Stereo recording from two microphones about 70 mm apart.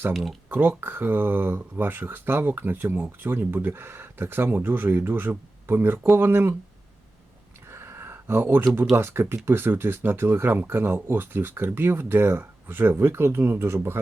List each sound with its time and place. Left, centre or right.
0.1 s speech: centre
0.7 s speech: right
7.7 s a sound: right
9.0 s speech: right